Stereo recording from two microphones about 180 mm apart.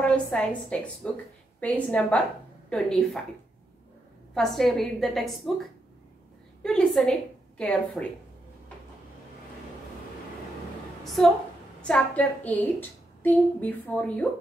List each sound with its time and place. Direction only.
0.0 s a woman's voice: 5° left (ahead or behind)
4.3 s a woman's voice: centre (ahead or behind)
11.8 s a woman's voice: 5° left (ahead or behind)